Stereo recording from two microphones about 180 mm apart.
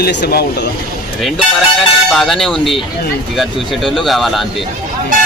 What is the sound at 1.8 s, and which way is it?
Speech, centre (ahead or behind).